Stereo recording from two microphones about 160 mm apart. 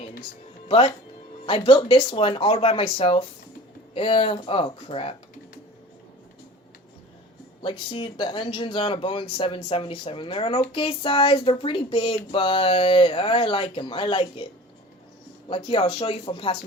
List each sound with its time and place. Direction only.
1.5 s speech: 35° left (ahead or behind)
7.6 s speech: 30° left (ahead or behind)
15.4 s speech: 35° left (ahead or behind)